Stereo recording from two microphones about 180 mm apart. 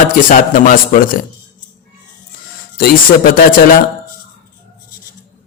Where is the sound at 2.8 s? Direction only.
55° left (ahead or behind).